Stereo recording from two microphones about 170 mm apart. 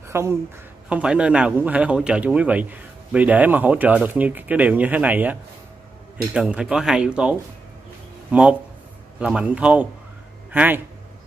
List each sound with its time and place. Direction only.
0.1 s speech: 15° right (ahead or behind)